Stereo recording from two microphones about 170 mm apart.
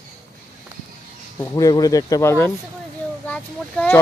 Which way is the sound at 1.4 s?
20° left (ahead or behind).